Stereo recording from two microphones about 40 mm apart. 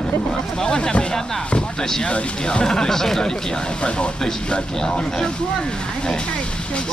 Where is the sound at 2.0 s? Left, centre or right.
Left.